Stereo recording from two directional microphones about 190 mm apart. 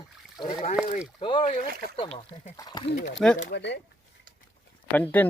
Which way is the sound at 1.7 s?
50° right (ahead or behind).